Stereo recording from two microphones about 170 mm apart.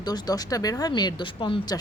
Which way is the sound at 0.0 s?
25° left (ahead or behind).